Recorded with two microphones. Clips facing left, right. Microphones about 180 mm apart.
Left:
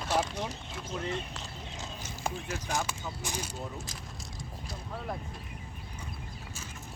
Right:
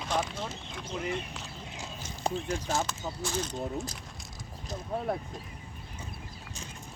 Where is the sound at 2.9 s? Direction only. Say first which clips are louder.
Right 3 dB; 10° left (ahead or behind).